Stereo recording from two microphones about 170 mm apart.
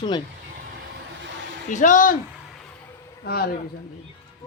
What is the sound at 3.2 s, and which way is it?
Speech, 70° left (ahead or behind).